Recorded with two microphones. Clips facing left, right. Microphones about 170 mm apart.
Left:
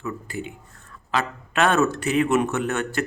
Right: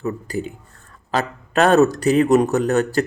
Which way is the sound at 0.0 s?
40° right (ahead or behind).